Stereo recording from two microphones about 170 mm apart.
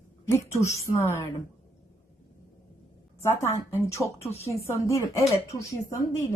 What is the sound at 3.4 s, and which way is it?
A woman's voice, 15° left (ahead or behind).